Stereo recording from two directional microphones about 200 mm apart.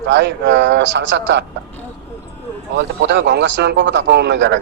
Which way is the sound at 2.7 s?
65° right (ahead or behind).